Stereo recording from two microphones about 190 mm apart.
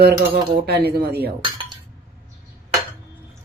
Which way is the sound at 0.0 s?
55° right (ahead or behind).